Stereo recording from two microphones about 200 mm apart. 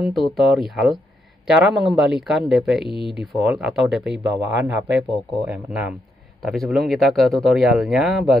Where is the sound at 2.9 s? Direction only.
25° left (ahead or behind).